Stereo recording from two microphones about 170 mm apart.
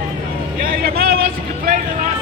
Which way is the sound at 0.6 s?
60° right (ahead or behind).